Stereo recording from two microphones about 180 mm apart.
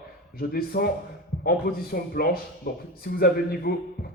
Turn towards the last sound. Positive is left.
turn(degrees=55)  # may be behind; listen again after turning